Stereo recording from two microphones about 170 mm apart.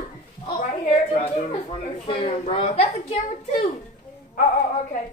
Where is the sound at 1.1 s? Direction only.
40° left (ahead or behind).